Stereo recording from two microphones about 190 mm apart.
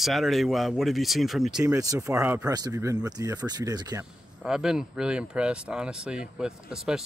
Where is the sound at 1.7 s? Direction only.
15° right (ahead or behind).